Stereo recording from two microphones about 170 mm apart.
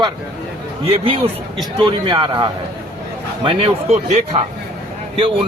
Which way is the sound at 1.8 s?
30° right (ahead or behind).